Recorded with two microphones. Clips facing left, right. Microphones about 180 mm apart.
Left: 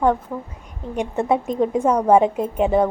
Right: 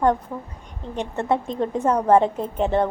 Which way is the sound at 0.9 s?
15° left (ahead or behind).